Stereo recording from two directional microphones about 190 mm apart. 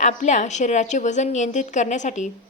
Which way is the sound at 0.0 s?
40° left (ahead or behind).